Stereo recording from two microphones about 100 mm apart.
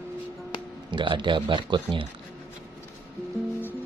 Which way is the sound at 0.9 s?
50° right (ahead or behind).